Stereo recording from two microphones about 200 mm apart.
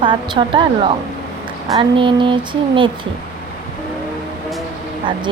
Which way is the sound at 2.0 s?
25° right (ahead or behind).